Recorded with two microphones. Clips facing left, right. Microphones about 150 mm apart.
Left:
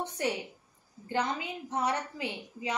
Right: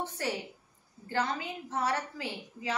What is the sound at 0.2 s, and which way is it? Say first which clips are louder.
A woman's voice: left 2 dB; 20° left (ahead or behind).